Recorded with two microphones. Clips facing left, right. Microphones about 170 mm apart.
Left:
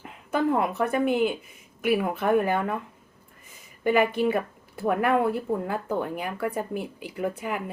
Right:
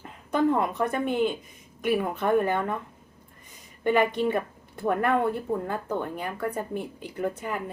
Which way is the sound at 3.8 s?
5° left (ahead or behind).